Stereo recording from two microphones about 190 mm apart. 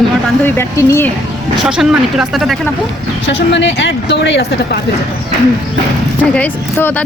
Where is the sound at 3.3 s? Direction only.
70° left (ahead or behind).